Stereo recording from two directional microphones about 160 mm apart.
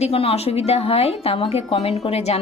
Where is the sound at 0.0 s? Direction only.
40° left (ahead or behind).